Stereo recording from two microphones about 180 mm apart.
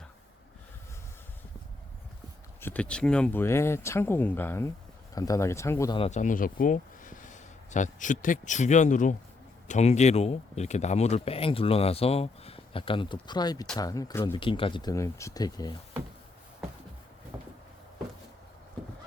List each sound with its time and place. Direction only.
2.6 s speech: 10° left (ahead or behind)
6.0 s speech: 40° left (ahead or behind); by 14.3 s 15° left (ahead or behind)
14.3 s speech: 30° left (ahead or behind)
17.3 s a sound: 15° right (ahead or behind)